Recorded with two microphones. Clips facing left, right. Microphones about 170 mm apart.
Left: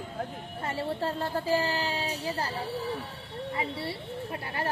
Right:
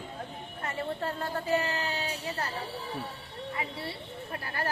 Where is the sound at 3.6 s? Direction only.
30° left (ahead or behind).